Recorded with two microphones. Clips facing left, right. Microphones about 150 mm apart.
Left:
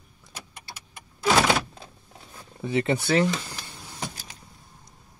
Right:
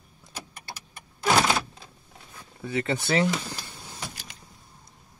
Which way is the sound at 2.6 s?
25° left (ahead or behind).